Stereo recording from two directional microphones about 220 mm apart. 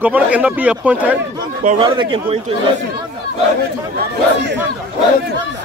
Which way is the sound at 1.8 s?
20° right (ahead or behind).